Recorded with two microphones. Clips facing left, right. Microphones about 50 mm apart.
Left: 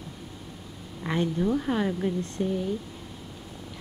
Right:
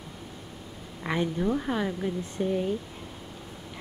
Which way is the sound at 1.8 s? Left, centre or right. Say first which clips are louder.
Left 2 dB; centre.